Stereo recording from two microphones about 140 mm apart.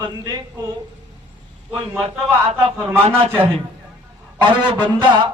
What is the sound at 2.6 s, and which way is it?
Speech, 45° right (ahead or behind).